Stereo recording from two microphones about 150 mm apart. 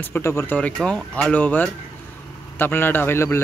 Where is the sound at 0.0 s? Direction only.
15° left (ahead or behind).